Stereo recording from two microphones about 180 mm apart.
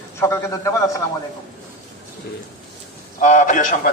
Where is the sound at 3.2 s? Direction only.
45° left (ahead or behind).